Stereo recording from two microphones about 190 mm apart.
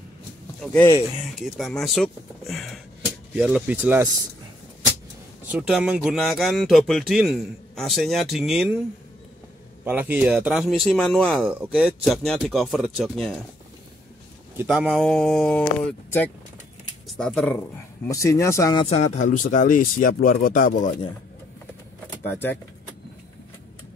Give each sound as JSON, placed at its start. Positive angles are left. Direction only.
{"t": 0.6, "sound": "speech", "side_deg": 10}
{"t": 5.5, "sound": "speech", "side_deg": -5}
{"t": 9.8, "sound": "speech", "side_deg": -10}
{"t": 14.6, "sound": "speech", "side_deg": -5}
{"t": 18.0, "sound": "speech", "side_deg": 15}
{"t": 18.9, "sound": "speech", "side_deg": 40}
{"t": 22.2, "sound": "speech", "side_deg": 10}